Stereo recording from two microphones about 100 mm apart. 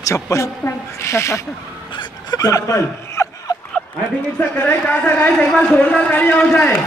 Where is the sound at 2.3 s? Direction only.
35° left (ahead or behind).